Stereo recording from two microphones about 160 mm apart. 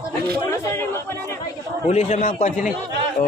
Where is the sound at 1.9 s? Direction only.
45° left (ahead or behind).